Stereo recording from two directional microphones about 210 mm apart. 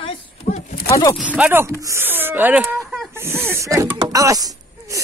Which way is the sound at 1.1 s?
5° right (ahead or behind).